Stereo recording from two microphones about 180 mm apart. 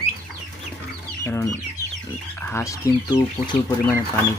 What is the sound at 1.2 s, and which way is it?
Speech, 15° left (ahead or behind).